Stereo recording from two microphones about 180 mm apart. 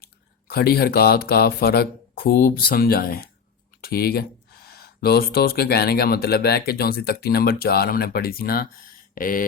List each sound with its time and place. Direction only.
0.5 s speech: 55° left (ahead or behind)
9.1 s mantra: 50° left (ahead or behind)